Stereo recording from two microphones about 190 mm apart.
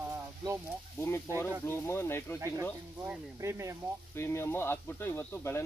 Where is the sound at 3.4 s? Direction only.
15° right (ahead or behind).